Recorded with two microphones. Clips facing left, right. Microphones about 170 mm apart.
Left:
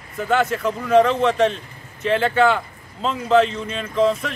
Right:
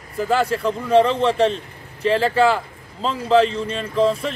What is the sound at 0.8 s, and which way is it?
Speech, 30° right (ahead or behind).